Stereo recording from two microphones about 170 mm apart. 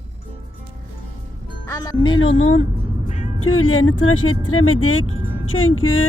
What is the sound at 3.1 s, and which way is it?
Music, 40° left (ahead or behind).